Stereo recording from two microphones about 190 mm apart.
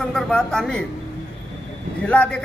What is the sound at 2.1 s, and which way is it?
Speech, 5° left (ahead or behind).